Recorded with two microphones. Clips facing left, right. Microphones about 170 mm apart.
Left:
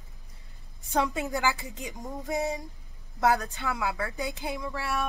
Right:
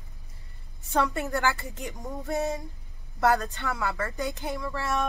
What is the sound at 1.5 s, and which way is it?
Speech, 65° right (ahead or behind).